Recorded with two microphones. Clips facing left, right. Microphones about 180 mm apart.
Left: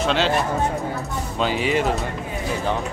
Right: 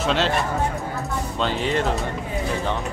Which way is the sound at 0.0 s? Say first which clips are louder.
Left 1 dB; centre (ahead or behind).